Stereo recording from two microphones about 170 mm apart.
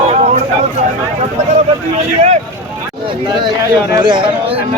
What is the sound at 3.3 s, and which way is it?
Speech, 25° right (ahead or behind).